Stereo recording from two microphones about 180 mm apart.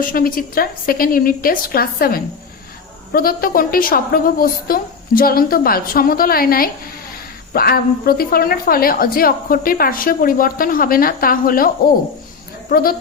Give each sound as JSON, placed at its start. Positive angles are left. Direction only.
{"t": 0.0, "sound": "a woman's voice", "side_deg": 50}